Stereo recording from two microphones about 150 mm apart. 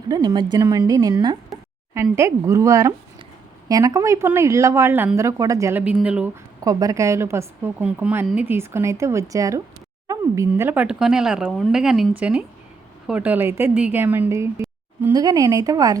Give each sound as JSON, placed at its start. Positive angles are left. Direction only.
{"t": 0.1, "sound": "speech", "side_deg": -30}
{"t": 5.8, "sound": "speech", "side_deg": -10}
{"t": 6.6, "sound": "speech", "side_deg": -25}